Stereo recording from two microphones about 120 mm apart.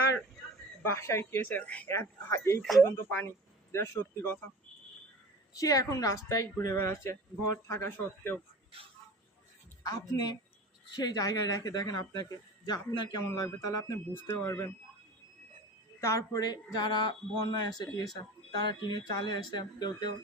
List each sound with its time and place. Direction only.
0.9 s speech: 25° left (ahead or behind)
1.9 s speech: 20° left (ahead or behind)
2.6 s speech: centre (ahead or behind)
2.8 s speech: 15° left (ahead or behind)
5.5 s speech: 30° left (ahead or behind)
9.8 s speech: 35° left (ahead or behind)
16.0 s speech: 25° left (ahead or behind)